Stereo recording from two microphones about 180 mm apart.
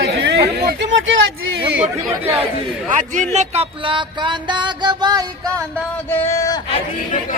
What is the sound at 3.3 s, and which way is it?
Music, 35° right (ahead or behind).